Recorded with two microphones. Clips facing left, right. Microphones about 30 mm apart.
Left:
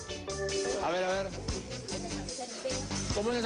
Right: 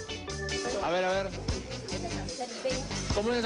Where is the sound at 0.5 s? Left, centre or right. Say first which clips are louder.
Right 1 dB; centre.